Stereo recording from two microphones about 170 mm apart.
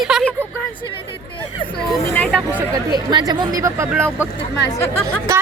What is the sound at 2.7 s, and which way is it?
Speech, 25° right (ahead or behind).